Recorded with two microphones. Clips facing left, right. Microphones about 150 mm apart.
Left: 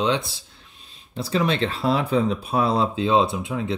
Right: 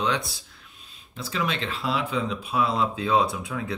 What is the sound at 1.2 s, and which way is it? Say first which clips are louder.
Speech: left 7 dB; 35° left (ahead or behind).